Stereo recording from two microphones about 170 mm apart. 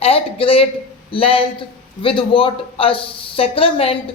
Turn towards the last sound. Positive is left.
turn(degrees=35)  # may be behind; listen again after turning